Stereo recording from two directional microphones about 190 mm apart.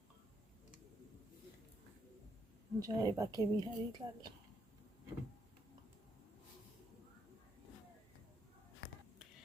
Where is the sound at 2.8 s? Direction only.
15° right (ahead or behind).